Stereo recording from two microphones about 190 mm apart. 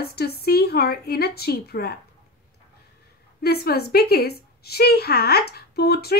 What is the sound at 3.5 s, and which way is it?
Speech, 55° left (ahead or behind).